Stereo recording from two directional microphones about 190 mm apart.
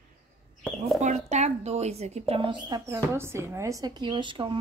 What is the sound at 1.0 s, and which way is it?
Speech, 40° right (ahead or behind).